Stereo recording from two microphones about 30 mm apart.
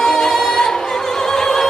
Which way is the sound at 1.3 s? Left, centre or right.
Centre.